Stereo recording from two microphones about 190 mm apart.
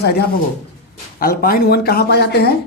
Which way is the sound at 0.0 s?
60° left (ahead or behind).